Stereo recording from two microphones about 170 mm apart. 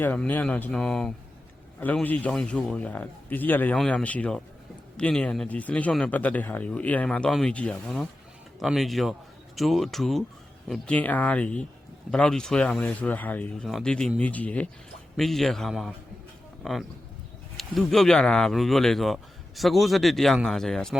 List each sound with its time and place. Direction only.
0.0 s a man's voice: 10° left (ahead or behind)